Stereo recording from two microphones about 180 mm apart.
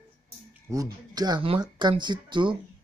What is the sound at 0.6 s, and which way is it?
Speech, 20° right (ahead or behind).